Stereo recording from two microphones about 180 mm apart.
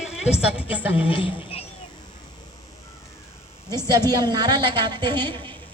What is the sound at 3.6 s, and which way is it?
Speech, 15° left (ahead or behind).